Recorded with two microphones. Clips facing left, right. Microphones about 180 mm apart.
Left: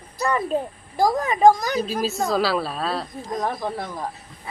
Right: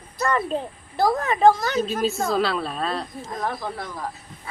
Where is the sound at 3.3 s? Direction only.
20° left (ahead or behind).